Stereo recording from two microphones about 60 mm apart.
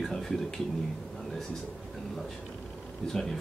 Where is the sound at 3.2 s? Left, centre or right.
Centre.